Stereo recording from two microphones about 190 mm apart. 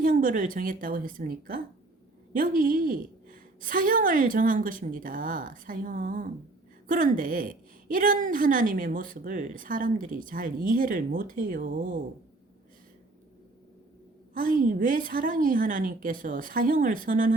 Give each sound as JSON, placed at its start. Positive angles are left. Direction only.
{"t": 0.0, "sound": "a sound", "side_deg": -45}
{"t": 0.5, "sound": "a woman's voice", "side_deg": -45}
{"t": 14.3, "sound": "a woman's voice", "side_deg": -45}